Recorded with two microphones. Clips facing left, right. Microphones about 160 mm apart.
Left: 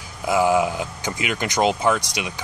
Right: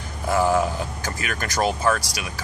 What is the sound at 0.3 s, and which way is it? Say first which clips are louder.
Speech: left 2 dB; 15° left (ahead or behind).